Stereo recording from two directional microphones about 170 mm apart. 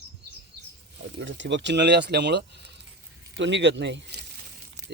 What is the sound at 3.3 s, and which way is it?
Speech, 90° right.